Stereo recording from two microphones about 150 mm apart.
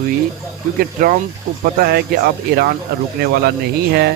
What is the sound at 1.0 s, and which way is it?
Speech, 60° right (ahead or behind).